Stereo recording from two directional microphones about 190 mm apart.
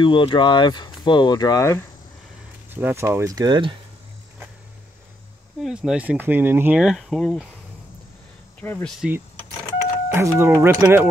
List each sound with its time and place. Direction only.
0.0 s speech: 25° left (ahead or behind)
2.7 s speech: 10° right (ahead or behind)
5.6 s speech: 5° right (ahead or behind)
8.5 s speech: 10° left (ahead or behind)
10.0 s speech: 10° right (ahead or behind)